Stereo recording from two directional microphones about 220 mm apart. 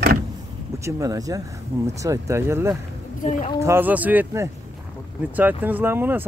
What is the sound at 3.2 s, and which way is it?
Speech, 35° left (ahead or behind).